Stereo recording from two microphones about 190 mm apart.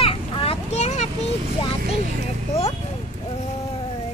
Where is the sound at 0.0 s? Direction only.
30° left (ahead or behind).